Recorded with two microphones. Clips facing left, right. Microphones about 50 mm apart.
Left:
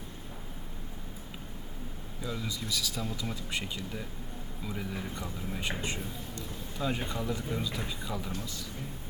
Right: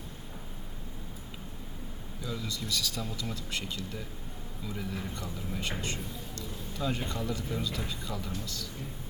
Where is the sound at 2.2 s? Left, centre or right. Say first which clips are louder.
Even; centre.